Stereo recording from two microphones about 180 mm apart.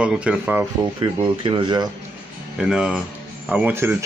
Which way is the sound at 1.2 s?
25° right (ahead or behind).